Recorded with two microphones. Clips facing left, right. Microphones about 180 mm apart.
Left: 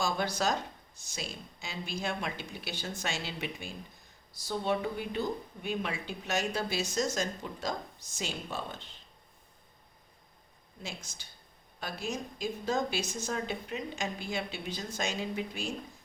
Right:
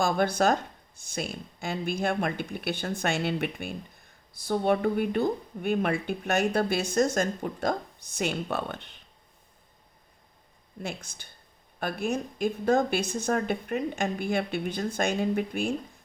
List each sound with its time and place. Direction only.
0.0 s a woman's voice: 55° right (ahead or behind)
10.8 s a woman's voice: 55° right (ahead or behind)